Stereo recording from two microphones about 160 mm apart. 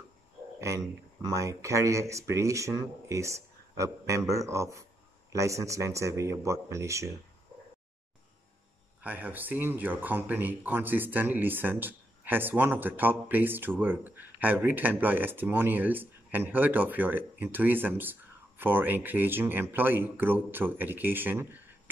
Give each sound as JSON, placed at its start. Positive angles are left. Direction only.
{"t": 0.6, "sound": "speech", "side_deg": -20}
{"t": 9.0, "sound": "speech", "side_deg": -10}